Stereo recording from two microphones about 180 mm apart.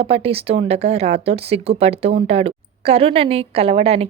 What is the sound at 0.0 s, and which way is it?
Speech, 30° right (ahead or behind).